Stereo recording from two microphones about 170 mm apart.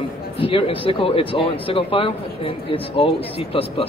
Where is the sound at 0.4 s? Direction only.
35° left (ahead or behind).